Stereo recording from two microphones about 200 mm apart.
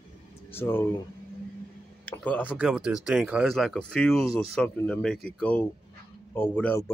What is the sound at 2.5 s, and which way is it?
Speech, 5° right (ahead or behind).